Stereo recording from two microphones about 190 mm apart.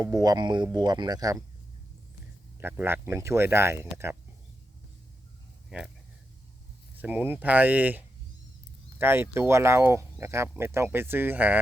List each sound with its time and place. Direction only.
0.0 s speech: 20° right (ahead or behind)
2.6 s speech: 10° right (ahead or behind)
5.6 s speech: centre (ahead or behind)
6.9 s speech: 10° right (ahead or behind)